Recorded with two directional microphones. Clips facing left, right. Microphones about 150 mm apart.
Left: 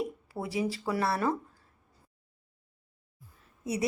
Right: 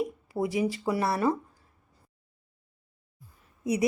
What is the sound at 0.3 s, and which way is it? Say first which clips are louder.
Speech: right 6 dB; 15° right (ahead or behind).